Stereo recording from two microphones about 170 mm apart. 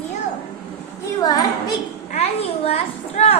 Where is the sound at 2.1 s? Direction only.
35° left (ahead or behind).